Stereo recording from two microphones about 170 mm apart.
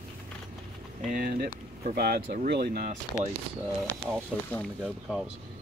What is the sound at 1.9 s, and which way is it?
Speech, 70° right (ahead or behind).